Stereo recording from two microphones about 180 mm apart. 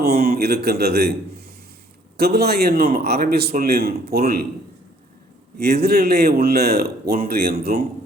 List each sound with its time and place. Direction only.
0.0 s a man's voice: 60° right (ahead or behind)
2.1 s a man's voice: 60° right (ahead or behind)
5.5 s a man's voice: 60° right (ahead or behind)